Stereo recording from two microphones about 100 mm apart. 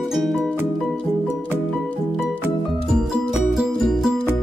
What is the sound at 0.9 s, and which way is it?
Music, 15° left (ahead or behind).